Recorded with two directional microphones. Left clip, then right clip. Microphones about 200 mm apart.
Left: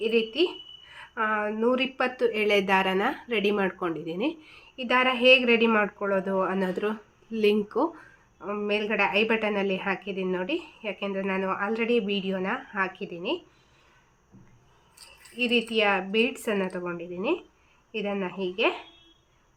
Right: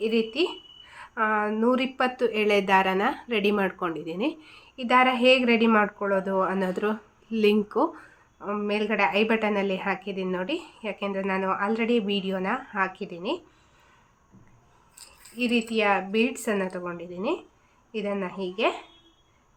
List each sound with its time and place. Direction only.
0.0 s a woman's voice: 5° right (ahead or behind)
14.9 s a woman's voice: centre (ahead or behind)